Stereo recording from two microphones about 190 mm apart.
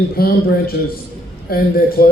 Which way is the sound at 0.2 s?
55° left (ahead or behind).